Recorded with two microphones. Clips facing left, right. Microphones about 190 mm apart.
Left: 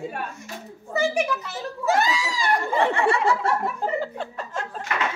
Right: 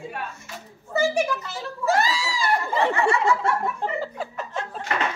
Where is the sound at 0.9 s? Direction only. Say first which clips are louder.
Right 1 dB; centre (ahead or behind).